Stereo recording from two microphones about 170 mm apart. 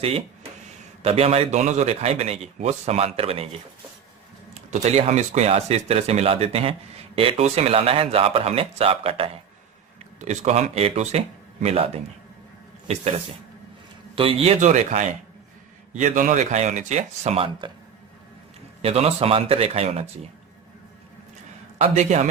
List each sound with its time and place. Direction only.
1.0 s speech: 35° right (ahead or behind)
4.7 s speech: 40° right (ahead or behind)
14.2 s speech: 35° right (ahead or behind)
18.8 s speech: 40° right (ahead or behind)
21.8 s speech: 45° right (ahead or behind)